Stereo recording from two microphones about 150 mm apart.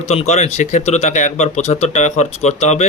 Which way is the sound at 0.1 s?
45° left (ahead or behind).